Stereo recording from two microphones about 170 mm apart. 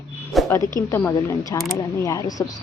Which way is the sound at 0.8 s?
15° left (ahead or behind).